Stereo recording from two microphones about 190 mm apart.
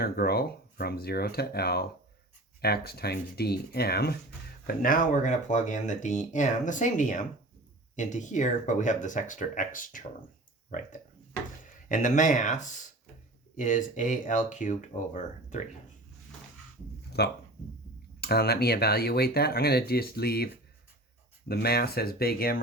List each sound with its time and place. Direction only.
0.0 s speech: 55° left (ahead or behind)
17.2 s speech: 60° left (ahead or behind)